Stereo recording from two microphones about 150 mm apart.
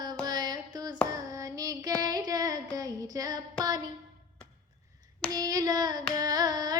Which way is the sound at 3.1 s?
25° right (ahead or behind).